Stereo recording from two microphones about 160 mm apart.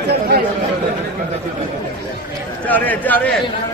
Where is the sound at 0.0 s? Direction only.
90° right.